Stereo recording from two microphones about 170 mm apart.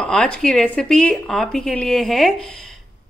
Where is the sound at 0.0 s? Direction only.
5° left (ahead or behind).